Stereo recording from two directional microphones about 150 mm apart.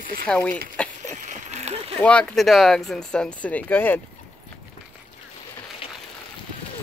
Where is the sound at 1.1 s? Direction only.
50° right (ahead or behind).